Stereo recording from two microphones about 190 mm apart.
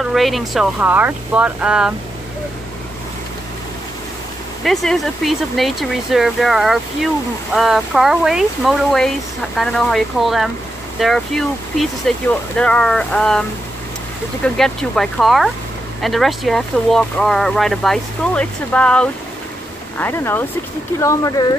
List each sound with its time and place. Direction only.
0.0 s speech: centre (ahead or behind)
4.6 s speech: centre (ahead or behind); by 21.5 s 20° left (ahead or behind)